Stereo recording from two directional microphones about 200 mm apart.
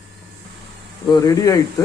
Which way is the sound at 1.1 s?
15° left (ahead or behind).